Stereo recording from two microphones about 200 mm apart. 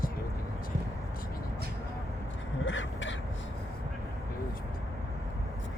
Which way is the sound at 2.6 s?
70° left (ahead or behind).